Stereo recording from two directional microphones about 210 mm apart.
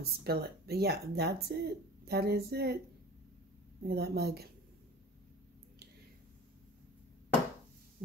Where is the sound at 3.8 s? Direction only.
50° right (ahead or behind).